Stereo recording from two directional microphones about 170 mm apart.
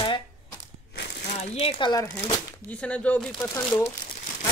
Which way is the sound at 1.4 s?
35° left (ahead or behind).